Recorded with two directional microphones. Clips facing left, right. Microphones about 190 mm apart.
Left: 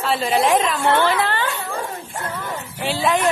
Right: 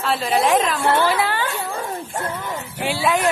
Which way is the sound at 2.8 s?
10° right (ahead or behind).